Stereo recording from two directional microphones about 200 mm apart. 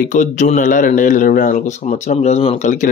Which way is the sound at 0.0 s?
40° left (ahead or behind).